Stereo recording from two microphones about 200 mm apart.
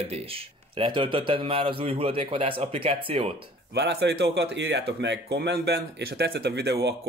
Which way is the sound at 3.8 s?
60° right (ahead or behind).